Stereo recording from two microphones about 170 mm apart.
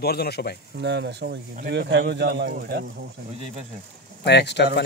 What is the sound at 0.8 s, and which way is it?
Speech, 85° right.